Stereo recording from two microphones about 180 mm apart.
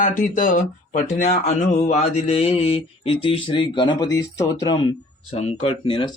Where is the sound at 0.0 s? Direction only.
45° left (ahead or behind); by 4.8 s 20° left (ahead or behind).